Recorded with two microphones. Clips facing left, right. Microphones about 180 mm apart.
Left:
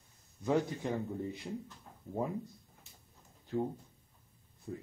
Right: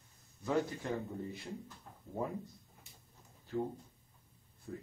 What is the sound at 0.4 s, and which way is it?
Speech, 20° left (ahead or behind).